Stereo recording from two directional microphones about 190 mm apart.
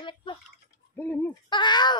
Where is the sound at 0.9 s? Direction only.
10° left (ahead or behind).